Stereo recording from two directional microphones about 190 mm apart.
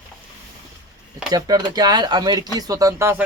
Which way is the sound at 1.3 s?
20° right (ahead or behind).